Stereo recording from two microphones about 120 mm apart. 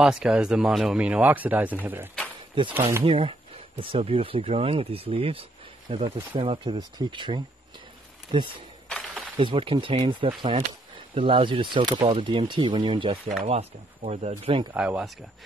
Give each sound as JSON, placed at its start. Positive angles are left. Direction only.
{"t": 0.0, "sound": "speech", "side_deg": -5}
{"t": 3.0, "sound": "speech", "side_deg": -50}
{"t": 6.8, "sound": "speech", "side_deg": -40}
{"t": 8.8, "sound": "a sound", "side_deg": 5}
{"t": 9.4, "sound": "speech", "side_deg": -45}
{"t": 13.5, "sound": "speech", "side_deg": -65}
{"t": 14.4, "sound": "speech", "side_deg": -50}
{"t": 14.8, "sound": "speech", "side_deg": -10}